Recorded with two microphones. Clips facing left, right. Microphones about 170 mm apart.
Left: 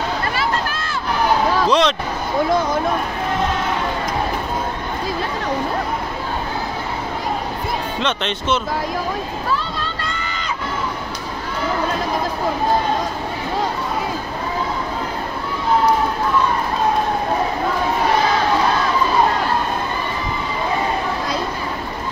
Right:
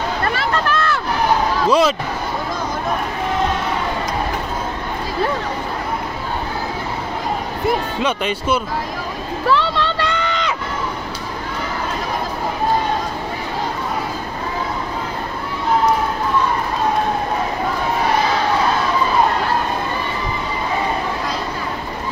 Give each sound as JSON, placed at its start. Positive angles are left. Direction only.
{"t": 0.7, "sound": "hubbub", "side_deg": -65}
{"t": 1.7, "sound": "speech", "side_deg": -5}
{"t": 8.0, "sound": "speech", "side_deg": -10}
{"t": 9.5, "sound": "a sound", "side_deg": -75}